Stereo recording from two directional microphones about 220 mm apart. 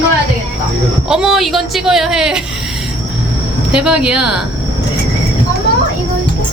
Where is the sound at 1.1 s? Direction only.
Centre (ahead or behind).